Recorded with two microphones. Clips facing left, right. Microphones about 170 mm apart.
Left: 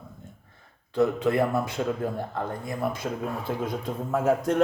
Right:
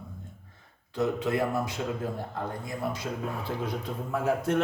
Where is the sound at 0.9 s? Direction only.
55° left (ahead or behind).